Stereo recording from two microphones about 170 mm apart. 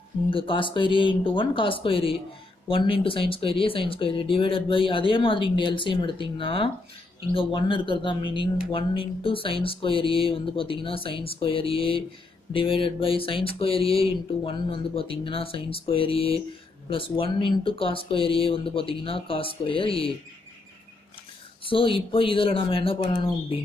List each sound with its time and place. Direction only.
0.3 s speech: 30° left (ahead or behind)
21.6 s speech: 30° left (ahead or behind)